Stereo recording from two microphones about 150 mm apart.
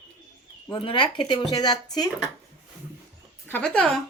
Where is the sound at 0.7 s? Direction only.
35° left (ahead or behind).